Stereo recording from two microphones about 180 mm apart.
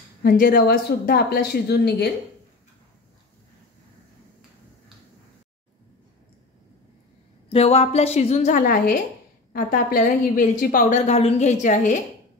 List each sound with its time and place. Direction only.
0.2 s speech: 55° left (ahead or behind)
7.4 s a woman's voice: 35° left (ahead or behind)